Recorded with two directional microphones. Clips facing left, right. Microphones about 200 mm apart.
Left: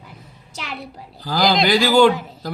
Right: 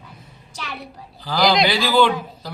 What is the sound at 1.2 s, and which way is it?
Speech, 45° left (ahead or behind).